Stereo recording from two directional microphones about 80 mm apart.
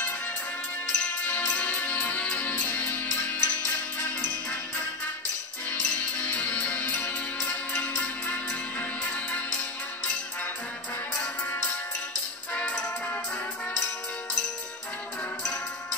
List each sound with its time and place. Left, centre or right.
0.8 s music: centre
5.7 s music: centre
12.5 s music: centre